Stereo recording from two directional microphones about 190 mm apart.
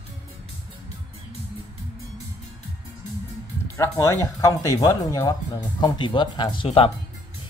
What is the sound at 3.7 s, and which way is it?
Speech, 15° left (ahead or behind).